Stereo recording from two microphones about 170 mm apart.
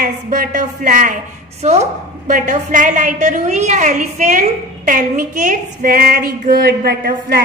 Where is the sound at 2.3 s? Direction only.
50° right (ahead or behind).